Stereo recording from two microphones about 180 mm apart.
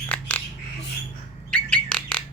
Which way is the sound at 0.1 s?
10° left (ahead or behind).